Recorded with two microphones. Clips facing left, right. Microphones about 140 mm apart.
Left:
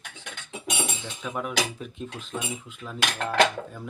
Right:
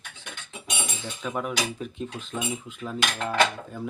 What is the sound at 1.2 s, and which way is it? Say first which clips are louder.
Cutlery: even; centre (ahead or behind).